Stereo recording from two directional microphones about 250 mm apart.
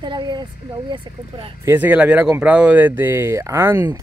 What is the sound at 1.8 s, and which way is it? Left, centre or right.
Speech, centre.